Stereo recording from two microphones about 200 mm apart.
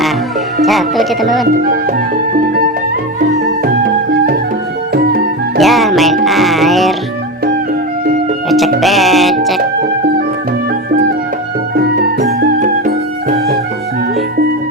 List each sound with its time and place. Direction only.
0.6 s speech: centre (ahead or behind)
5.5 s music: centre (ahead or behind)
8.4 s music: centre (ahead or behind)
11.7 s music: 50° right (ahead or behind)
12.5 s music: 40° right (ahead or behind)